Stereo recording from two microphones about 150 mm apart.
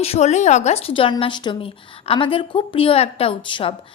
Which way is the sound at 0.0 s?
45° left (ahead or behind).